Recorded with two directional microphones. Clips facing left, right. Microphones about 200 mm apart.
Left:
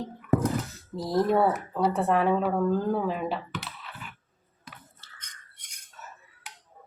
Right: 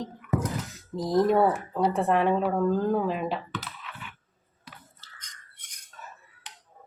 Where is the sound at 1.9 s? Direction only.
Centre (ahead or behind).